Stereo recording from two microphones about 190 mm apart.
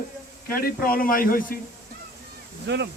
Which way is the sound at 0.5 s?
50° left (ahead or behind).